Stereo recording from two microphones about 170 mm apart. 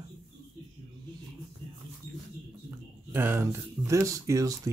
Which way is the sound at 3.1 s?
15° right (ahead or behind).